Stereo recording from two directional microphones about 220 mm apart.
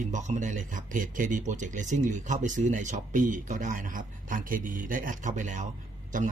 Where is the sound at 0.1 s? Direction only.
35° right (ahead or behind).